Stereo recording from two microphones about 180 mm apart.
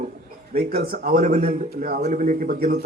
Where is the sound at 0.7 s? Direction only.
60° right (ahead or behind).